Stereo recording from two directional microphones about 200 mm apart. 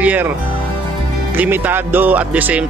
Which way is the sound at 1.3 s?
10° right (ahead or behind).